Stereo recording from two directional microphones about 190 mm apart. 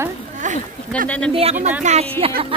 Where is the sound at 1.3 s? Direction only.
30° right (ahead or behind).